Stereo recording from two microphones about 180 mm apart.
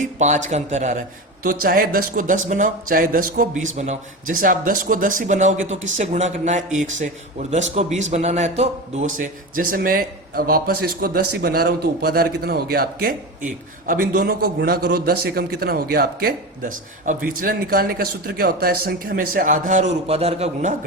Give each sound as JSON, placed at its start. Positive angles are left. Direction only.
{"t": 0.0, "sound": "speech", "side_deg": -40}
{"t": 1.5, "sound": "a man's voice", "side_deg": -50}